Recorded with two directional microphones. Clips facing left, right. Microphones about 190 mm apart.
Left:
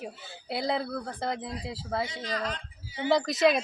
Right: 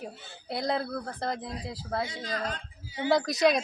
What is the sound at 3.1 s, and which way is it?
Speech, centre (ahead or behind).